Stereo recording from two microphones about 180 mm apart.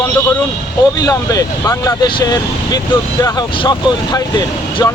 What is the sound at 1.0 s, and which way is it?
Speech, 20° left (ahead or behind).